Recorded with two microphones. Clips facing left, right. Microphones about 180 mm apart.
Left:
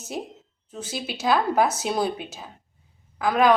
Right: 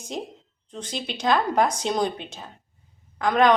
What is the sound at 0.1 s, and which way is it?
A woman's voice, 5° left (ahead or behind).